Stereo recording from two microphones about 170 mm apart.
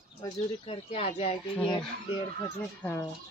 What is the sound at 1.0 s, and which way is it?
Speech, 35° left (ahead or behind).